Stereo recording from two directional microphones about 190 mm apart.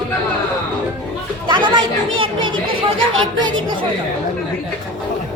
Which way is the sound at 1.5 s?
25° right (ahead or behind).